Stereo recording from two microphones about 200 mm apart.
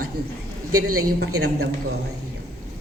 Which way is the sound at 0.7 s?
90° right.